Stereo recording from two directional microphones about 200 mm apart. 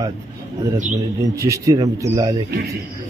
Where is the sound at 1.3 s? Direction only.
15° right (ahead or behind).